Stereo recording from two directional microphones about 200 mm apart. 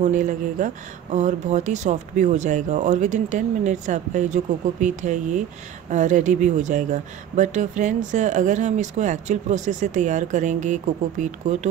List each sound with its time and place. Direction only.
0.0 s speech: 40° right (ahead or behind)